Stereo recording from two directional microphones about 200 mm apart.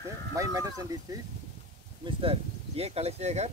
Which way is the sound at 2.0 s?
25° right (ahead or behind).